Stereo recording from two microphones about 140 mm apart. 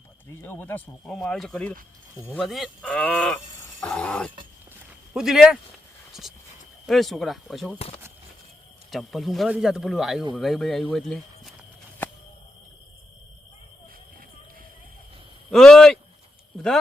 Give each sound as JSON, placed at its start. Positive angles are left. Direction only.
{"t": 0.4, "sound": "speech", "side_deg": 15}
{"t": 3.8, "sound": "a sound", "side_deg": 10}
{"t": 5.1, "sound": "speech", "side_deg": -5}
{"t": 6.8, "sound": "speech", "side_deg": 0}
{"t": 7.8, "sound": "speech", "side_deg": 45}
{"t": 8.9, "sound": "speech", "side_deg": 0}
{"t": 15.4, "sound": "a sound", "side_deg": 0}